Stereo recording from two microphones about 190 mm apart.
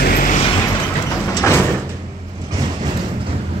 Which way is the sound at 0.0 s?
50° left (ahead or behind).